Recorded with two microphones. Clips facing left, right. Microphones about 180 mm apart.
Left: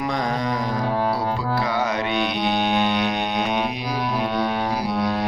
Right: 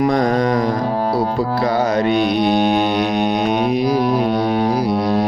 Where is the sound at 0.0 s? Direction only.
45° right (ahead or behind).